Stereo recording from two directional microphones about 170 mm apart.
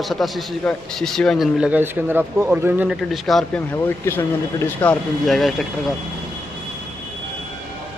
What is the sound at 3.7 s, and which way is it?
A man's voice, 15° left (ahead or behind).